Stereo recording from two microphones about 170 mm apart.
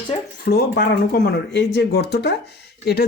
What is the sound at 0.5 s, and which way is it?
Speech, 75° left (ahead or behind).